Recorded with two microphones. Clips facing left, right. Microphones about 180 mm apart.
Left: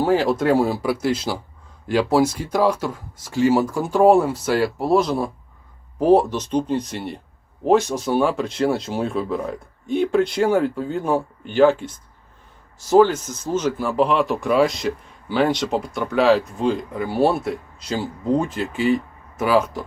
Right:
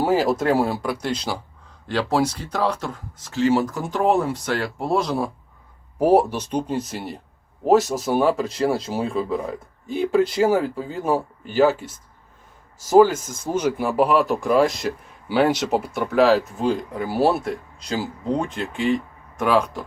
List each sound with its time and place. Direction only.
0.0 s speech: 5° right (ahead or behind)